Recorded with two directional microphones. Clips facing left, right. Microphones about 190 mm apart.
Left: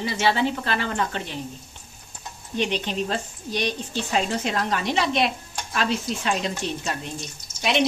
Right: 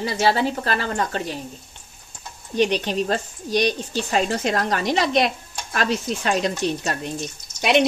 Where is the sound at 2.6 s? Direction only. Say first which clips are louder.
Right 5 dB; 40° right (ahead or behind).